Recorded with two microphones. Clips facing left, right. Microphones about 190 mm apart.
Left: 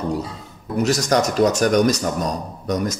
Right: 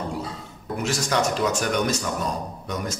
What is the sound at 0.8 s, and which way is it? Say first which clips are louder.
Mantra: left 4 dB; 40° left (ahead or behind).